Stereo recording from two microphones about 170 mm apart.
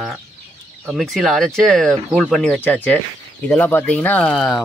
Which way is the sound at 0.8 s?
Centre (ahead or behind).